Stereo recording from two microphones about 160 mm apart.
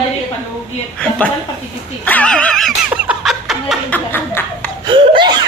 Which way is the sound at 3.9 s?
15° left (ahead or behind).